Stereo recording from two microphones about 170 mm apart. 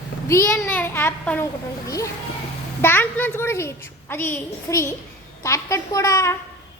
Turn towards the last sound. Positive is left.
turn(degrees=15)  # may be behind; listen again after turning